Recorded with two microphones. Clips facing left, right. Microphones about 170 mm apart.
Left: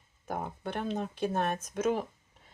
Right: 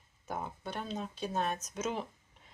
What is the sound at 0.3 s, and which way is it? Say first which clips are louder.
Speech: left 4 dB; 55° left (ahead or behind).